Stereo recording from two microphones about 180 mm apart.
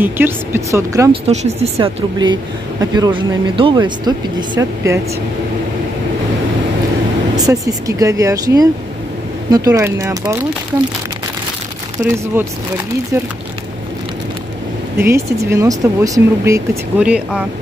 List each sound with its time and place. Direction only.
0.0 s speech: 10° right (ahead or behind)
1.1 s speech: 35° right (ahead or behind); by 5.0 s 15° right (ahead or behind)
7.3 s speech: 20° right (ahead or behind)
12.0 s speech: 10° right (ahead or behind)
15.0 s speech: 15° right (ahead or behind)
17.0 s speech: 5° right (ahead or behind)